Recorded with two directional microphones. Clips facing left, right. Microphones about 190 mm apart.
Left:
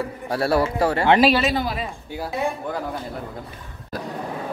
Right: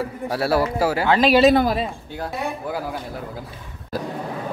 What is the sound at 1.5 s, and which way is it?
Speech, 55° right (ahead or behind).